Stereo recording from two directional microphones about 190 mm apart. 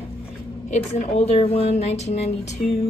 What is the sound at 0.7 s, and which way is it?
Speech, 35° left (ahead or behind).